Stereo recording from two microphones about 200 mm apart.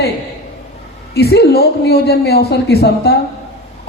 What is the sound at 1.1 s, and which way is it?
A woman's voice, 55° left (ahead or behind).